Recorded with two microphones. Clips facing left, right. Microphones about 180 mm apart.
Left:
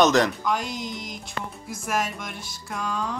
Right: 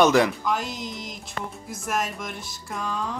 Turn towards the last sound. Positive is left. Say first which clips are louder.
# left 1 dB
turn(degrees=0)  # may be behind; listen again after turning